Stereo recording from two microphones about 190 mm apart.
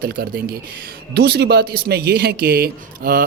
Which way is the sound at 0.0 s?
50° right (ahead or behind).